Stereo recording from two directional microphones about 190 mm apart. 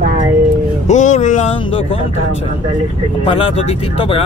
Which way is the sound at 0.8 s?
40° left (ahead or behind).